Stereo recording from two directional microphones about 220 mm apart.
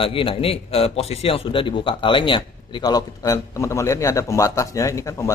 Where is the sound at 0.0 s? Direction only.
25° left (ahead or behind).